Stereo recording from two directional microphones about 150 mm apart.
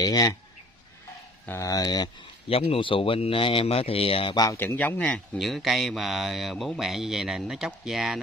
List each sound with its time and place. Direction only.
0.0 s speech: 25° left (ahead or behind)
1.4 s speech: 20° left (ahead or behind)
2.5 s speech: 40° left (ahead or behind)
4.6 s speech: 10° left (ahead or behind)